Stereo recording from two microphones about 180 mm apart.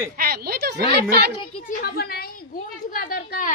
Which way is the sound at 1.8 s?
60° left (ahead or behind).